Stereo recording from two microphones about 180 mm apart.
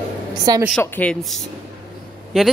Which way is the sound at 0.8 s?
10° left (ahead or behind).